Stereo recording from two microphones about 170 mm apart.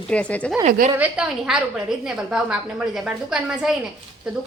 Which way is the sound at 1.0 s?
5° right (ahead or behind).